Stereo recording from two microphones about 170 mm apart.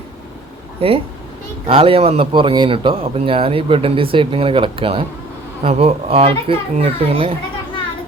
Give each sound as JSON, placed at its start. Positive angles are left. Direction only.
{"t": 0.8, "sound": "speech", "side_deg": -35}